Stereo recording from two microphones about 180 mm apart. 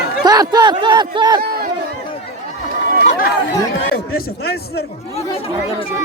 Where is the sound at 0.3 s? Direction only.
20° right (ahead or behind).